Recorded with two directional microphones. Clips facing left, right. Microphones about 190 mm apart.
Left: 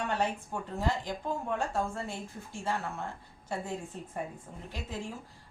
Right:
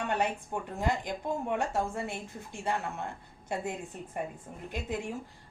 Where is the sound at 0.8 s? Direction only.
15° right (ahead or behind).